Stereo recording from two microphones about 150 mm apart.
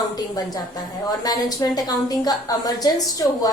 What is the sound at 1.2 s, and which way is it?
A woman's voice, 25° left (ahead or behind).